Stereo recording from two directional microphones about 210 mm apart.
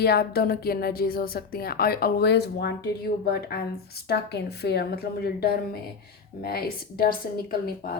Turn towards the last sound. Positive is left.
turn(degrees=45)  # may be behind; listen again after turning